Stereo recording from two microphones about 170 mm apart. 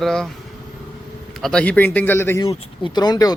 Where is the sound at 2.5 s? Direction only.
25° left (ahead or behind).